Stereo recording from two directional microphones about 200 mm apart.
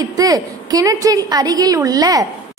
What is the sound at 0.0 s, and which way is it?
A woman's voice, 20° right (ahead or behind).